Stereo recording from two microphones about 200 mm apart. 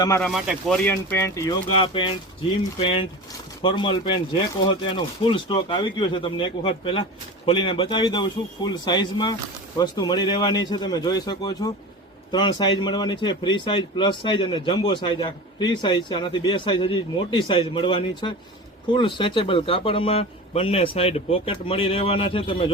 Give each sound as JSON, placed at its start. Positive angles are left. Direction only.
{"t": 0.2, "sound": "speech", "side_deg": 0}
{"t": 0.9, "sound": "speech", "side_deg": 15}
{"t": 1.7, "sound": "a man's voice", "side_deg": 25}